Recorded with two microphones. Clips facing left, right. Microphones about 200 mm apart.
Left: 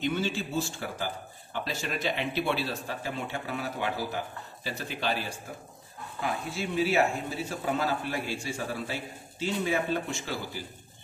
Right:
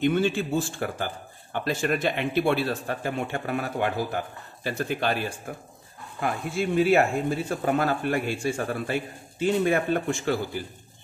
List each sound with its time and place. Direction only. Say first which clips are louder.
0.0 s speech: right 7 dB; 55° right (ahead or behind)